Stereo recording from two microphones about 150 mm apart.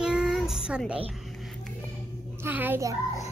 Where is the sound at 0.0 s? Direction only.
5° right (ahead or behind).